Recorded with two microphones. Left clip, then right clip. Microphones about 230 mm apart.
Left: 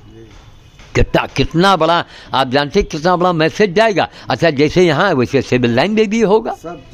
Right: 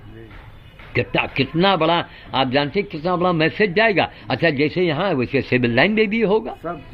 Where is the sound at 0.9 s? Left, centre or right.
Left.